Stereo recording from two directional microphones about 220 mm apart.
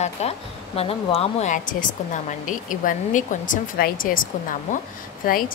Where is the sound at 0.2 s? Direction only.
30° left (ahead or behind).